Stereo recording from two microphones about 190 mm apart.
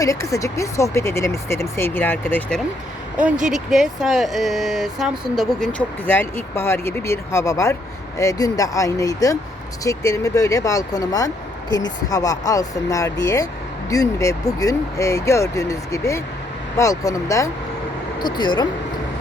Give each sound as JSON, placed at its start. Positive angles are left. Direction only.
{"t": 0.0, "sound": "speech", "side_deg": 15}
{"t": 3.5, "sound": "speech", "side_deg": 0}